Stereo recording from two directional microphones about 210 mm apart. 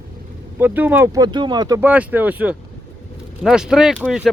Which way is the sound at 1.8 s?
10° right (ahead or behind).